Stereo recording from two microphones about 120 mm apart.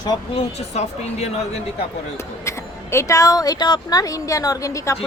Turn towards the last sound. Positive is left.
turn(degrees=25)  # may be behind; listen again after turning